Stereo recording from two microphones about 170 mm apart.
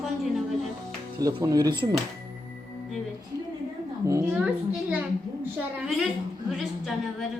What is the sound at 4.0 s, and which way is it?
Speech, 15° right (ahead or behind).